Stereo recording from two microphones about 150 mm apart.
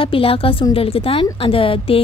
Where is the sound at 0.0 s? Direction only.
35° left (ahead or behind).